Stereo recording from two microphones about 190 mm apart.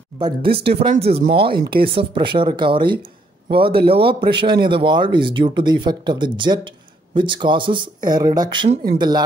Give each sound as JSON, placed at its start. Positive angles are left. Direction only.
{"t": 0.2, "sound": "speech", "side_deg": -25}